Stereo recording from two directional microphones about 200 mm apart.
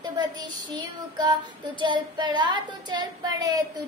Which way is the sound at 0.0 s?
20° right (ahead or behind).